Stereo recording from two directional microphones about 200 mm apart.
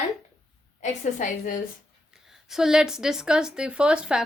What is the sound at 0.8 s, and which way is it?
Speech, 35° left (ahead or behind).